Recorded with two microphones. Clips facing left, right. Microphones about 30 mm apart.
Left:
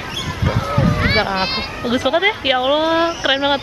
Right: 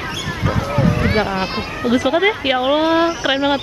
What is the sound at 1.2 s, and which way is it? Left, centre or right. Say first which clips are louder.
Speech: left 1 dB; left.